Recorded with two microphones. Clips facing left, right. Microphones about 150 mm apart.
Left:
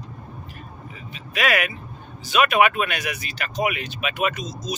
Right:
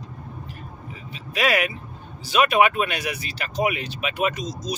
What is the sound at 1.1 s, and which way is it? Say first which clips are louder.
Speech: right 1 dB; 30° right (ahead or behind).